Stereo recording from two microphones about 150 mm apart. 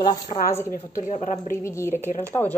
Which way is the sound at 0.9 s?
55° left (ahead or behind).